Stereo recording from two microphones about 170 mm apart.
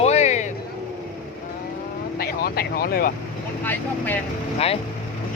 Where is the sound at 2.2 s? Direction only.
65° left (ahead or behind).